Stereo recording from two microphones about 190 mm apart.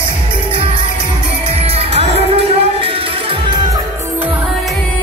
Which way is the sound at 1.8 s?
30° right (ahead or behind).